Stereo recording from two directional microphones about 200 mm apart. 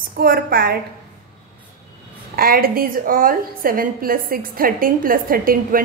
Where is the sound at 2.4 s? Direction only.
45° right (ahead or behind).